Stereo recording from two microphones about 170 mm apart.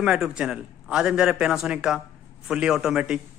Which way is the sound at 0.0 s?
5° right (ahead or behind).